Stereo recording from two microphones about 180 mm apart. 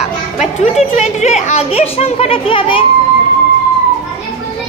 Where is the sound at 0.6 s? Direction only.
40° left (ahead or behind).